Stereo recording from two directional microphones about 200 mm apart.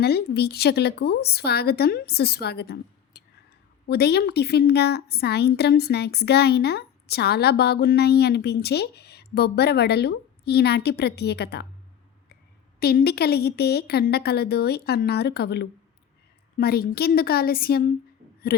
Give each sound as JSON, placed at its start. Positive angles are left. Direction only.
{"t": 0.0, "sound": "a woman's voice", "side_deg": 55}
{"t": 12.8, "sound": "a woman's voice", "side_deg": 50}